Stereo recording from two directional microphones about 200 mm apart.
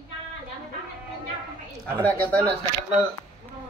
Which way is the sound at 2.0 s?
5° left (ahead or behind).